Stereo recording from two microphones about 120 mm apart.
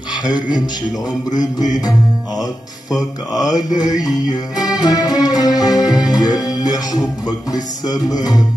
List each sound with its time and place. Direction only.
0.1 s speech: 35° left (ahead or behind)
1.4 s music: 30° left (ahead or behind)